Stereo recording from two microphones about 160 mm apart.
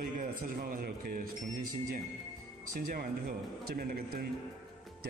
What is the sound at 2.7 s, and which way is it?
A man's voice, 65° right (ahead or behind).